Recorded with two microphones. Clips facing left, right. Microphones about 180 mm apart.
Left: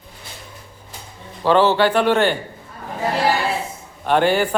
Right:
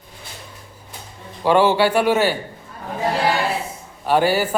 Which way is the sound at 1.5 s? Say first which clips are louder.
Even; 10° right (ahead or behind).